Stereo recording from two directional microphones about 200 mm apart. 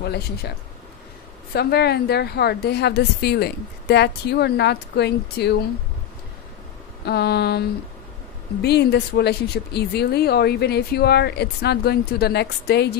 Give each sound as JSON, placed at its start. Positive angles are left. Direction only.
{"t": 0.0, "sound": "a woman's voice", "side_deg": 55}
{"t": 7.1, "sound": "a woman's voice", "side_deg": 55}
{"t": 8.6, "sound": "speech", "side_deg": 55}